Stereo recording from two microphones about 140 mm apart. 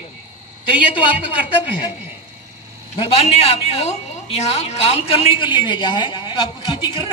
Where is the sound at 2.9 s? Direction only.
45° left (ahead or behind).